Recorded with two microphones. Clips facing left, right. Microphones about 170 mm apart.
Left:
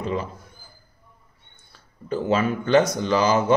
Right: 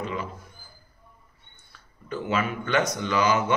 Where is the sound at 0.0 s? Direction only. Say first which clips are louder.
Left 5 dB; 35° left (ahead or behind).